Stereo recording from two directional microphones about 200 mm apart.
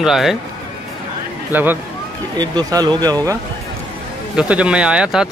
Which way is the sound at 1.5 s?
10° right (ahead or behind).